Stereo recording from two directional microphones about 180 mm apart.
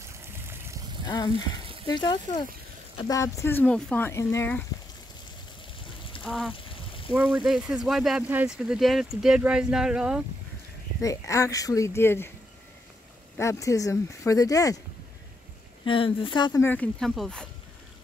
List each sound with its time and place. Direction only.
0.0 s vehicle: 15° right (ahead or behind)
1.0 s a sound: 25° left (ahead or behind)
1.3 s speech: 30° right (ahead or behind)
1.9 s speech: 25° left (ahead or behind)
6.2 s speech: centre (ahead or behind)
11.0 s speech: 20° left (ahead or behind)
13.4 s speech: 15° left (ahead or behind)
15.8 s speech: 30° left (ahead or behind)
16.6 s speech: 10° left (ahead or behind)